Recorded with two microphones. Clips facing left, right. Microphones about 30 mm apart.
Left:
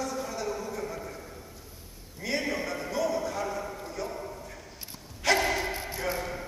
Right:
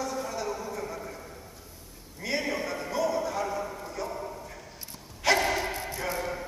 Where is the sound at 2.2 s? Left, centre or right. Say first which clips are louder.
Even; centre.